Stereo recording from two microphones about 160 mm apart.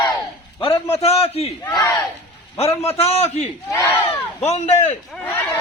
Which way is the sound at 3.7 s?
20° left (ahead or behind).